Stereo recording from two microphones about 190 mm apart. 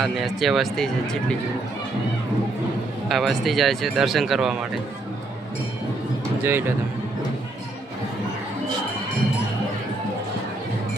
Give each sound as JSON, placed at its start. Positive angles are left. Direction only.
{"t": 0.0, "sound": "speech", "side_deg": 0}
{"t": 3.1, "sound": "speech", "side_deg": 0}
{"t": 6.4, "sound": "speech", "side_deg": -10}